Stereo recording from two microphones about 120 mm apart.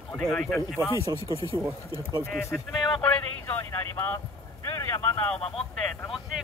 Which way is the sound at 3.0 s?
15° left (ahead or behind).